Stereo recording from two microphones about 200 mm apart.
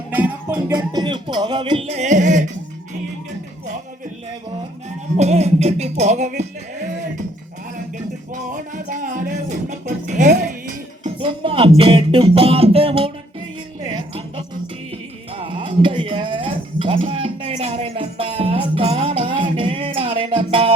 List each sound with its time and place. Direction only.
0.1 s music: 5° right (ahead or behind)
0.7 s music: 20° right (ahead or behind); by 2.5 s 40° right (ahead or behind)
5.1 s music: 35° right (ahead or behind)
8.4 s music: 40° right (ahead or behind)
11.0 s music: 25° right (ahead or behind)
15.4 s a sound: 25° right (ahead or behind)